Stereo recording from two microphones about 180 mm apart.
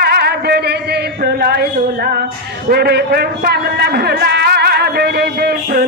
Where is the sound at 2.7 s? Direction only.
65° right (ahead or behind).